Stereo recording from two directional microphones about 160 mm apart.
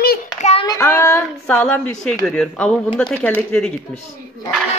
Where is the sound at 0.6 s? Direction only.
15° left (ahead or behind).